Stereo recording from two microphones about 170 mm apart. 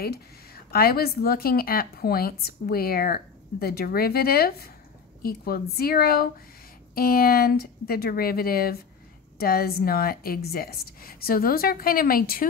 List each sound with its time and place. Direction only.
0.0 s speech: 65° left (ahead or behind)